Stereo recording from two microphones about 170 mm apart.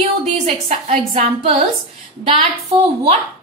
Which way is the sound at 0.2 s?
45° right (ahead or behind).